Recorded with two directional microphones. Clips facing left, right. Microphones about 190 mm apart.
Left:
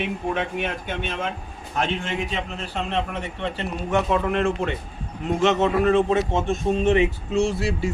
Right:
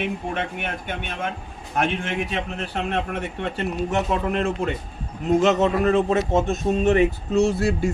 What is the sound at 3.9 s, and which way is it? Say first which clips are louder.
A man's voice: left 4 dB; 35° right (ahead or behind).